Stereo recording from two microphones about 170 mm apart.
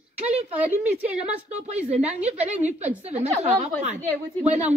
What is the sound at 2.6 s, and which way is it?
Speech, 10° right (ahead or behind).